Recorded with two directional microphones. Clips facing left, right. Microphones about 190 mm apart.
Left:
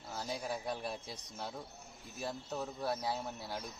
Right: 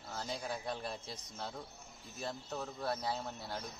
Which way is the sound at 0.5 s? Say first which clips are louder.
Left 1 dB; 10° left (ahead or behind).